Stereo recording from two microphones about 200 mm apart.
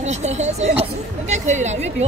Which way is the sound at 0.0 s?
35° right (ahead or behind).